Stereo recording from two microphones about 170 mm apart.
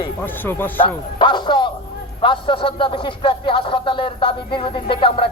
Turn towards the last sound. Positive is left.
turn(degrees=30)  # may be behind; listen again after turning